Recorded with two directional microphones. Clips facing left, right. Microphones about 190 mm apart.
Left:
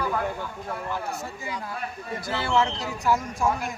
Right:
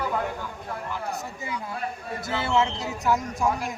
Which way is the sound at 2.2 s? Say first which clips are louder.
Even; 20° right (ahead or behind).